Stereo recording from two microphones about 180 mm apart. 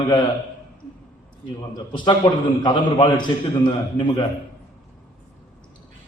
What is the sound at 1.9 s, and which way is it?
A man's voice, 25° left (ahead or behind).